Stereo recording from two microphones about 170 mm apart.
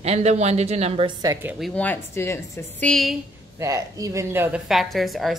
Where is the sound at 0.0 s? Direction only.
40° right (ahead or behind).